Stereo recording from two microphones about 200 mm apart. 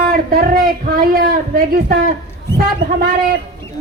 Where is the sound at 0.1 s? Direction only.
45° right (ahead or behind).